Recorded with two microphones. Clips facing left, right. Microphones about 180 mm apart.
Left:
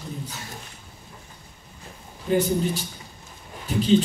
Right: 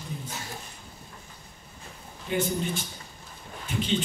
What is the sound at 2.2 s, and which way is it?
A man's voice, 40° left (ahead or behind).